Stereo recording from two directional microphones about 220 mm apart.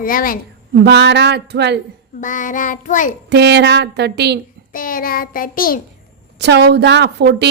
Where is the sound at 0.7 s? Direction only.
50° right (ahead or behind).